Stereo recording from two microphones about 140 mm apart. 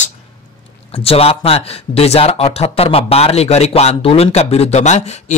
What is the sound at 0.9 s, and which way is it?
A man's voice, 45° left (ahead or behind).